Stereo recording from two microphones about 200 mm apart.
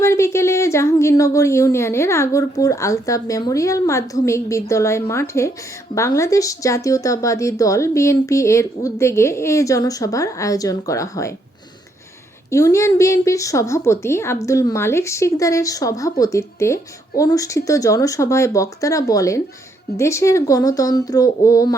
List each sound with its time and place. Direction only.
0.0 s a woman's voice: 15° left (ahead or behind)
12.5 s a woman's voice: 15° left (ahead or behind)